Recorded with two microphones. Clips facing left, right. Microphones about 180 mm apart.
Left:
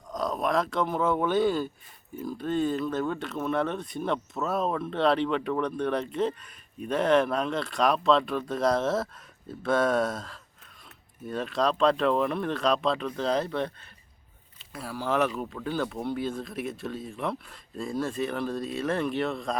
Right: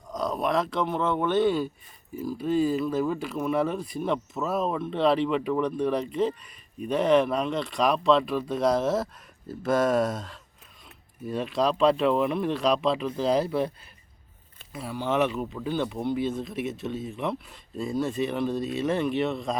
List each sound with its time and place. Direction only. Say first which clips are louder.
0.1 s speech: right 1 dB; centre (ahead or behind)